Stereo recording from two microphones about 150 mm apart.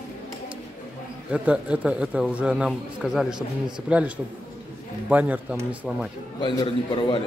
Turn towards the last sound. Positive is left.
turn(degrees=30)  # may be behind; listen again after turning